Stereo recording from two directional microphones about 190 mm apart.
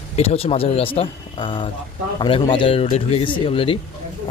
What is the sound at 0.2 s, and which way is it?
Speech, 30° left (ahead or behind).